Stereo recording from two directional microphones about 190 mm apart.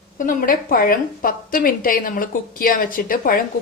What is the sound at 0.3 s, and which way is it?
A woman's voice, 50° left (ahead or behind).